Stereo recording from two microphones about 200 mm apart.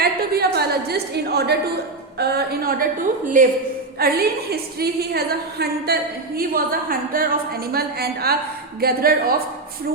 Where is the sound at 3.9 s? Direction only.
50° right (ahead or behind).